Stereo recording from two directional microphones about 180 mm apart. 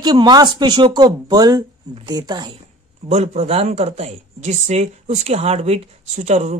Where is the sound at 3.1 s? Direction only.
35° right (ahead or behind).